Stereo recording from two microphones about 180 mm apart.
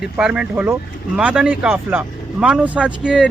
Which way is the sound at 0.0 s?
5° right (ahead or behind).